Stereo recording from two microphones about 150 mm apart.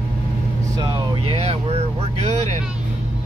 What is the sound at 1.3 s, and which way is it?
Speech, 45° right (ahead or behind).